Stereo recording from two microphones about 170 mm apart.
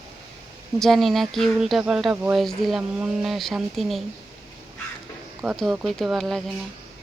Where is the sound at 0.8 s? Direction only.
Centre (ahead or behind).